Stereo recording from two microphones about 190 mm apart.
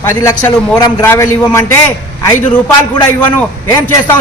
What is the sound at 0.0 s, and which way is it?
A man's voice, 15° left (ahead or behind).